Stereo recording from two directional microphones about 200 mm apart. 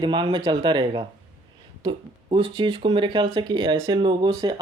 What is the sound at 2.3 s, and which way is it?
Speech, 25° right (ahead or behind).